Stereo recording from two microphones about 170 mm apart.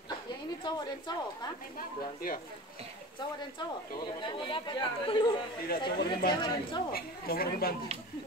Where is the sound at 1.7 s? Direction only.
55° left (ahead or behind).